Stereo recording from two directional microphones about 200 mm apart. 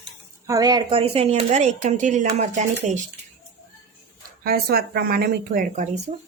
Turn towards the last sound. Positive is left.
turn(degrees=-35)  # may be behind; listen again after turning